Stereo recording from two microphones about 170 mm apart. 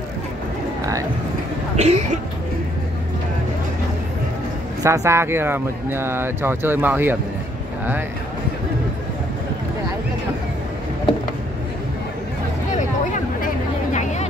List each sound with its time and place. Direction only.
1.8 s speech: 40° right (ahead or behind)
4.8 s speech: 15° right (ahead or behind)